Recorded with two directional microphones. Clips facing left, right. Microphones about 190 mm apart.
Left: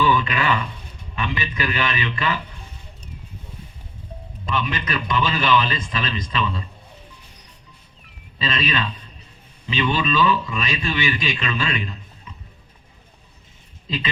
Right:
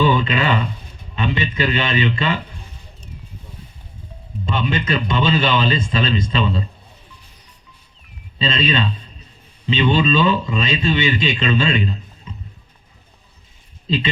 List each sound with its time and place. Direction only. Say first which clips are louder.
0.0 s a sound: right 3 dB; 25° right (ahead or behind)
1.1 s a man's voice: right 5 dB; 25° right (ahead or behind)
4.4 s a man's voice: right 4 dB; 30° right (ahead or behind)
8.4 s a man's voice: right 4 dB; 25° right (ahead or behind)
13.8 s speech: right 7 dB; 30° right (ahead or behind)